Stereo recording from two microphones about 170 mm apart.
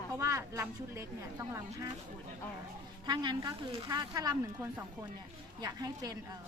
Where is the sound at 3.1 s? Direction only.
25° right (ahead or behind).